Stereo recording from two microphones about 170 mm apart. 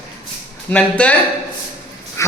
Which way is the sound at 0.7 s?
10° left (ahead or behind).